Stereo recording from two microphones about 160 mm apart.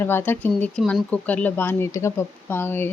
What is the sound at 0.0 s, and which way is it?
A woman's voice, 15° left (ahead or behind).